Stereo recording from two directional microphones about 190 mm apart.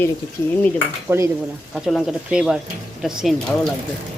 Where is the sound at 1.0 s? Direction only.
15° right (ahead or behind).